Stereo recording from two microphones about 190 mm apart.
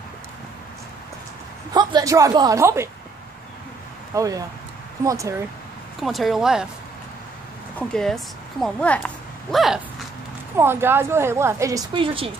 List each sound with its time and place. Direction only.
1.7 s a woman's voice: 20° right (ahead or behind)
4.1 s a woman's voice: 15° right (ahead or behind)
5.9 s speech: centre (ahead or behind)
7.8 s speech: 5° left (ahead or behind)
10.6 s a woman's voice: 10° right (ahead or behind)